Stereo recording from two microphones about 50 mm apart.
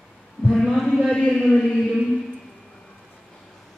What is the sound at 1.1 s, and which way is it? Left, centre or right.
Speech, centre.